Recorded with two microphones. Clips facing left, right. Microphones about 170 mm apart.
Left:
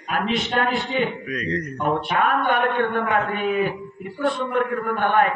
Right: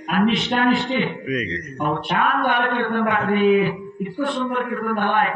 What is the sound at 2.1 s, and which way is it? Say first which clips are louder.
Mantra: right 1 dB; 50° left (ahead or behind).